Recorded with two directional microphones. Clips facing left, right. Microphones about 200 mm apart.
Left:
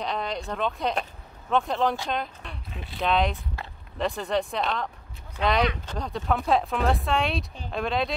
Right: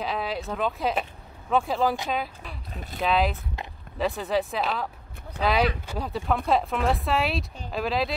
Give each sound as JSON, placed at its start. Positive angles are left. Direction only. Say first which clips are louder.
{"t": 0.0, "sound": "speech", "louder": "right 1 dB", "side_deg": -5}
{"t": 2.7, "sound": "speech", "louder": "right 3 dB", "side_deg": -40}
{"t": 3.0, "sound": "speech", "louder": "even", "side_deg": -5}
{"t": 3.6, "sound": "a sound", "louder": "right 2 dB", "side_deg": -20}
{"t": 4.0, "sound": "speech", "louder": "right 1 dB", "side_deg": 0}